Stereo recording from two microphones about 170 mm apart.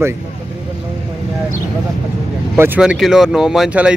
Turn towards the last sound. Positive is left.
turn(degrees=-5)  # may be behind; listen again after turning